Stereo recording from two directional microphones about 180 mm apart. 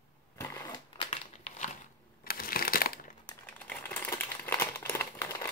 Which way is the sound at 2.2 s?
55° left (ahead or behind).